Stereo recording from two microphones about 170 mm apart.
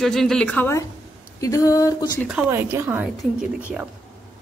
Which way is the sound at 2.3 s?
10° right (ahead or behind).